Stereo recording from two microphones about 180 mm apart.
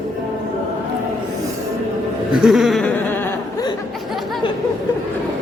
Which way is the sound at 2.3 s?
Centre (ahead or behind).